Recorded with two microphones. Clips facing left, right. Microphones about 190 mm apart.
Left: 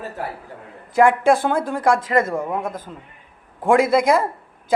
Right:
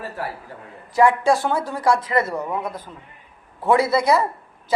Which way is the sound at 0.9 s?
55° left (ahead or behind).